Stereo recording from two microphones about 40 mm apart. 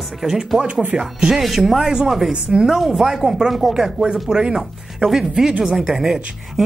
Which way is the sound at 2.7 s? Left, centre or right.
Centre.